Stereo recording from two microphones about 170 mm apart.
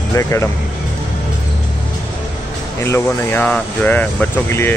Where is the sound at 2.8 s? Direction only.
15° left (ahead or behind).